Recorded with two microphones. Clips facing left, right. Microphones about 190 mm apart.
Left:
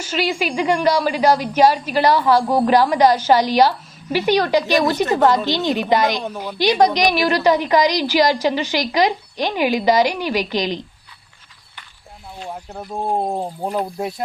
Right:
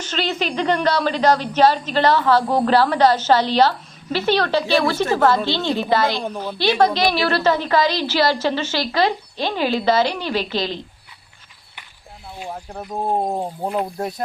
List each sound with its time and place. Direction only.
0.0 s a woman's voice: 10° left (ahead or behind)
12.6 s speech: 5° left (ahead or behind)